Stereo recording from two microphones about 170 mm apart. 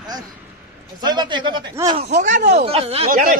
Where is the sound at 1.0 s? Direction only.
25° right (ahead or behind).